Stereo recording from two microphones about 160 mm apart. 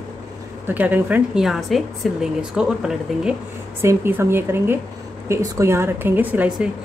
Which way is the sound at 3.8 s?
15° right (ahead or behind).